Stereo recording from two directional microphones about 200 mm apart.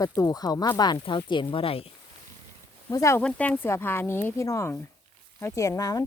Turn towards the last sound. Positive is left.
turn(degrees=15)  # may be behind; listen again after turning